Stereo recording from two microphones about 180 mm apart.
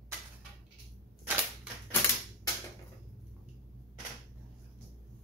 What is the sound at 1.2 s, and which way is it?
Cap gun, 10° right (ahead or behind).